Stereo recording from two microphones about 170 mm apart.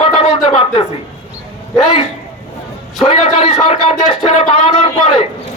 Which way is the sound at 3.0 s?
35° left (ahead or behind).